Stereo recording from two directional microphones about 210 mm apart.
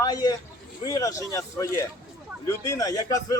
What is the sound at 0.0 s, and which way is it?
A man's voice, 20° left (ahead or behind).